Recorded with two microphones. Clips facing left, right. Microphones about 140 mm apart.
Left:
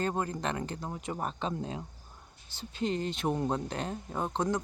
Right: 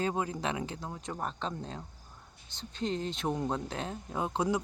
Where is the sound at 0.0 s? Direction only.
5° right (ahead or behind).